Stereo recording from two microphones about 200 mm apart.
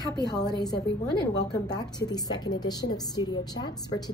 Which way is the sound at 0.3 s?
20° left (ahead or behind).